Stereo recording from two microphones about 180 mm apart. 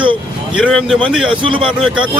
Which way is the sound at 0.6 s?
5° left (ahead or behind).